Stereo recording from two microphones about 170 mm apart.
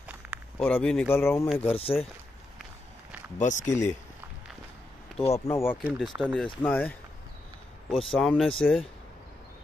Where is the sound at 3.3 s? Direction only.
45° left (ahead or behind).